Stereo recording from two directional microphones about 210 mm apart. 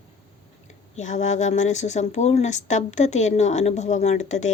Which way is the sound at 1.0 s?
35° left (ahead or behind).